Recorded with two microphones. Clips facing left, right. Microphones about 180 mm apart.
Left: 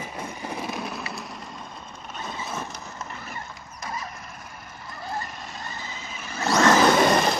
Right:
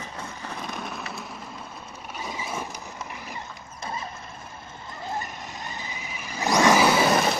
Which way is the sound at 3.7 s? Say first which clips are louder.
Even; 30° right (ahead or behind).